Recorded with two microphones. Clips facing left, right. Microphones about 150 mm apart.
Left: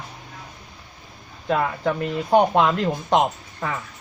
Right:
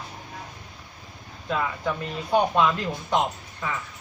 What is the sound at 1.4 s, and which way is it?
Speech, 65° left (ahead or behind).